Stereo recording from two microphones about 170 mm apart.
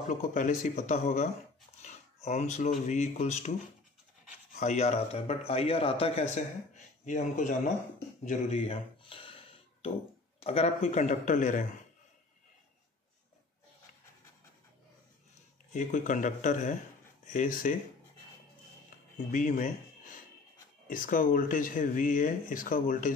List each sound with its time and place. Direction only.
0.1 s speech: 50° left (ahead or behind)
4.6 s speech: 40° left (ahead or behind)
8.3 s a sound: 35° left (ahead or behind)
10.4 s speech: 35° left (ahead or behind)
15.7 s speech: 50° left (ahead or behind)
19.1 s speech: 50° left (ahead or behind)
20.9 s speech: 55° left (ahead or behind)